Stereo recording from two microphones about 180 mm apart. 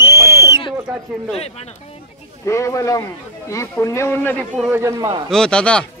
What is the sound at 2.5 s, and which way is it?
Speech, 15° left (ahead or behind).